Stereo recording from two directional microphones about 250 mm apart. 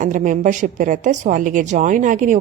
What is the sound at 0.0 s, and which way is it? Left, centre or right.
Speech, right.